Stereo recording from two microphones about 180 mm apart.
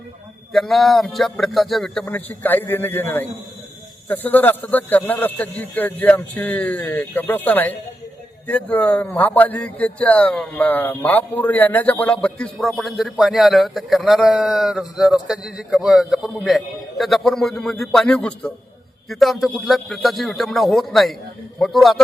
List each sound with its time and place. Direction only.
0.5 s a man's voice: centre (ahead or behind)